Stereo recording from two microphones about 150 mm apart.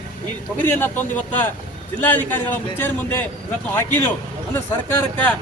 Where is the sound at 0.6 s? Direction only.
15° left (ahead or behind).